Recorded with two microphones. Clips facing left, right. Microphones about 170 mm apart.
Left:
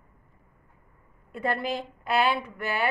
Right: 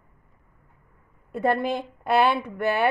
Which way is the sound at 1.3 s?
55° right (ahead or behind).